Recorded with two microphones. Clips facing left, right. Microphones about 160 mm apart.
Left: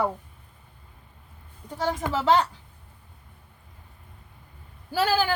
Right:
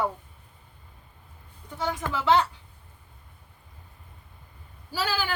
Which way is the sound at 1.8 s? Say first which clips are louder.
Left 3 dB; 35° left (ahead or behind).